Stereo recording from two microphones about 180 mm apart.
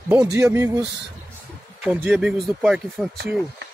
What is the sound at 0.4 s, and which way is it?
Speech, 15° right (ahead or behind).